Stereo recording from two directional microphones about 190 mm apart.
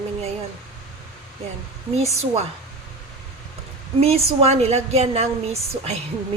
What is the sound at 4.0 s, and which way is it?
A woman's voice, 30° right (ahead or behind).